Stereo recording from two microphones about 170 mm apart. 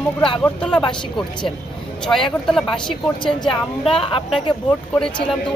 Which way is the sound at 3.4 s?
30° left (ahead or behind).